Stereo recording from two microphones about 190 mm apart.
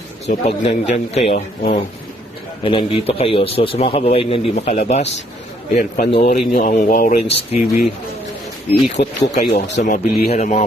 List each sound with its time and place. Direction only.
0.3 s a man's voice: 35° left (ahead or behind)
6.1 s a man's voice: 30° left (ahead or behind)
7.3 s a man's voice: 35° left (ahead or behind)
9.0 s a man's voice: 40° left (ahead or behind)
10.3 s a man's voice: 35° left (ahead or behind)